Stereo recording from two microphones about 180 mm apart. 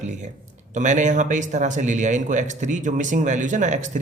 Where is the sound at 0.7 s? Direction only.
45° right (ahead or behind).